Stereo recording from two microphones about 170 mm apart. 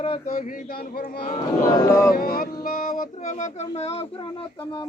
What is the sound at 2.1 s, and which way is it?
Child singing, 60° left (ahead or behind).